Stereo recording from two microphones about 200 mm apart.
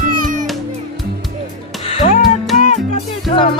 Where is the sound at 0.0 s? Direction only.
40° right (ahead or behind).